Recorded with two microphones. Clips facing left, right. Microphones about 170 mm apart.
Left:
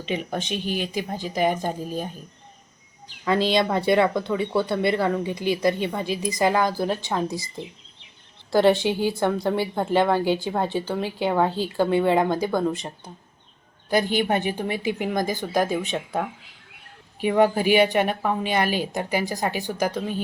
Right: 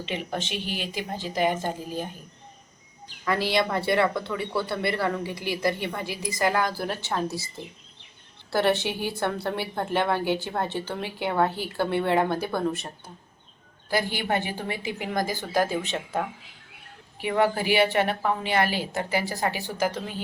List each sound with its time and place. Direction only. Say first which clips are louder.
0.1 s a woman's voice: left 5 dB; 15° left (ahead or behind)
3.2 s speech: left 4 dB; 20° left (ahead or behind)
8.5 s a woman's voice: left 5 dB; 15° left (ahead or behind)
13.9 s a woman's voice: left 5 dB; 20° left (ahead or behind)